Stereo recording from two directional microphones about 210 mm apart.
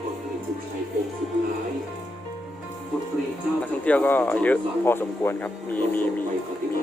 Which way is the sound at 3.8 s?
5° left (ahead or behind).